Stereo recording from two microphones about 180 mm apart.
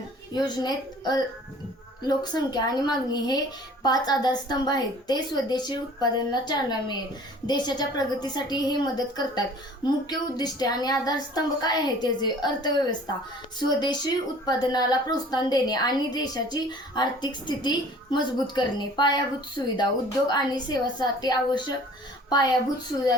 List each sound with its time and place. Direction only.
0.3 s a woman's voice: 25° left (ahead or behind)